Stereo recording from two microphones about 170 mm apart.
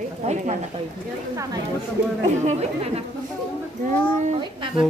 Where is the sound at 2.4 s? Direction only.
40° right (ahead or behind).